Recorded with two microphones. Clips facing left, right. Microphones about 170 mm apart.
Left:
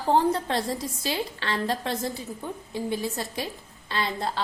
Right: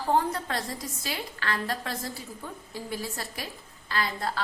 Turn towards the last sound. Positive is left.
turn(degrees=25)  # may be behind; listen again after turning